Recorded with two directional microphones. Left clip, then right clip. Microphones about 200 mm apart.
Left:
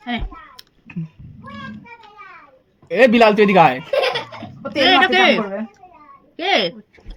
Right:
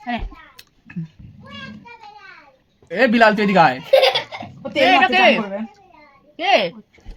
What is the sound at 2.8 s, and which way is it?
Speech, 10° left (ahead or behind).